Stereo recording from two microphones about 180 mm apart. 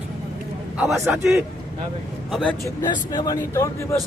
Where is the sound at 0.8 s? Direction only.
Centre (ahead or behind).